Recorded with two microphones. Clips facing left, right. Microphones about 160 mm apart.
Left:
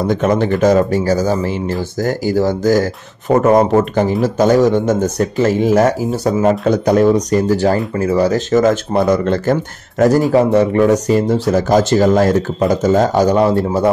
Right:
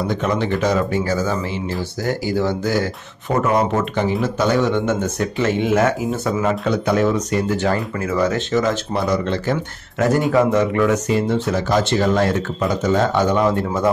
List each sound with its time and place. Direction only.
0.0 s a man's voice: 45° left (ahead or behind)